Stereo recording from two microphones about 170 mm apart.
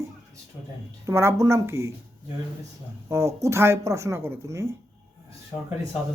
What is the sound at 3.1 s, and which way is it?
Speech, 15° right (ahead or behind).